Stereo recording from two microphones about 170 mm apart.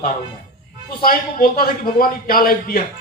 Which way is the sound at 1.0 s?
60° left (ahead or behind).